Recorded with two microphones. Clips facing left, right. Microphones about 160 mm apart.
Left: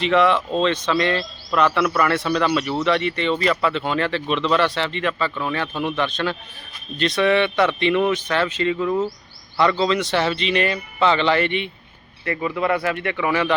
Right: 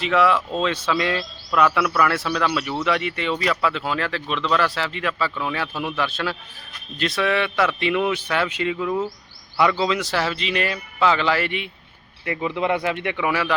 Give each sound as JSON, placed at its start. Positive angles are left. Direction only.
{"t": 0.0, "sound": "speech", "side_deg": -5}